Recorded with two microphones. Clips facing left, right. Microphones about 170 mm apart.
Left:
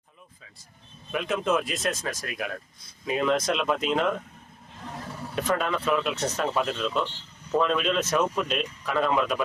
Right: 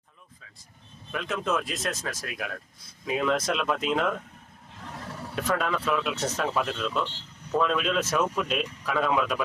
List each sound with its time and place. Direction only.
1.1 s speech: 5° left (ahead or behind)
5.3 s speech: centre (ahead or behind)